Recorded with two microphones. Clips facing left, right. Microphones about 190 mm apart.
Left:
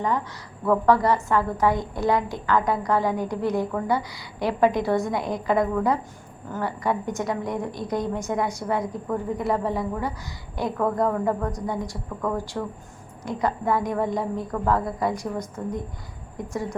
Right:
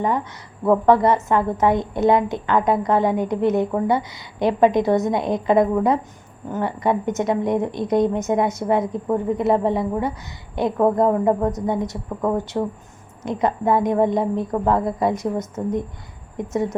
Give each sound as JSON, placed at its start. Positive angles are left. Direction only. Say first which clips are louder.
{"t": 0.6, "sound": "a woman's voice", "louder": "right 4 dB", "side_deg": -20}